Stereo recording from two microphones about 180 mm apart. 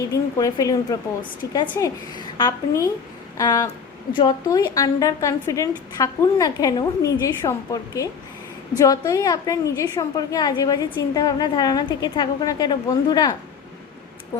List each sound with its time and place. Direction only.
0.1 s a woman's voice: 20° left (ahead or behind)